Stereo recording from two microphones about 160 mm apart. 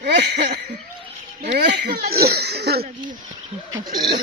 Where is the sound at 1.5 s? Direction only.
85° right.